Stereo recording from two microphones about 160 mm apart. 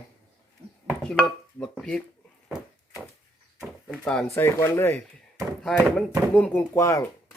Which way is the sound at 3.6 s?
5° right (ahead or behind).